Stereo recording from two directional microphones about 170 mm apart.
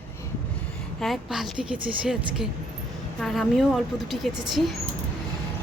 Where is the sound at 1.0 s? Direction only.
Centre (ahead or behind).